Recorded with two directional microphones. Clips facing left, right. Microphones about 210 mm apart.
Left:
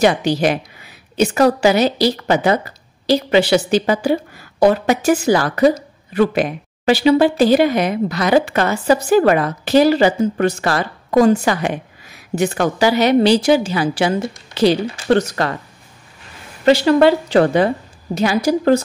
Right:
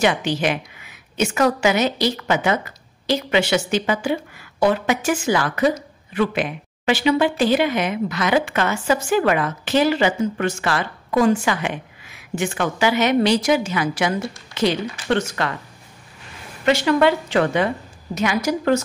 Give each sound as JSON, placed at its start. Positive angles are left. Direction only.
{"t": 0.0, "sound": "a woman's voice", "side_deg": 40}
{"t": 16.6, "sound": "a woman's voice", "side_deg": 35}